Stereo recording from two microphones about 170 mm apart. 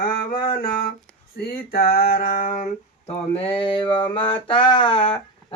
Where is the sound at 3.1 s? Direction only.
30° left (ahead or behind).